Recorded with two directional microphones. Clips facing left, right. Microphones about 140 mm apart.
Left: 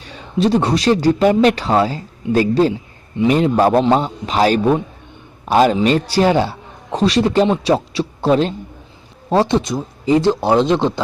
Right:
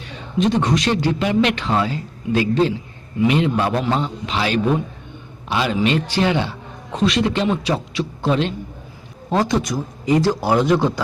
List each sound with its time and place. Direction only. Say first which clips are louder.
0.0 s a man's voice: left 2 dB; 35° left (ahead or behind)